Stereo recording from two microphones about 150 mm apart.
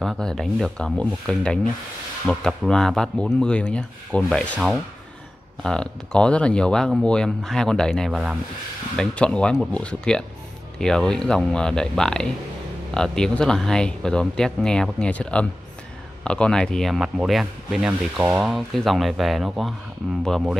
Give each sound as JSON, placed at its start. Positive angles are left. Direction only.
{"t": 0.0, "sound": "speech", "side_deg": 0}